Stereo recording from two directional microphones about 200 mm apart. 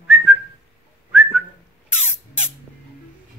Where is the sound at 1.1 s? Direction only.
5° right (ahead or behind).